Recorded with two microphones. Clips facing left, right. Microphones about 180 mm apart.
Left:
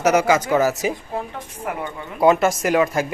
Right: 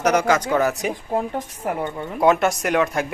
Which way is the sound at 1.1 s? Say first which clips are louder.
Right 5 dB; 40° right (ahead or behind).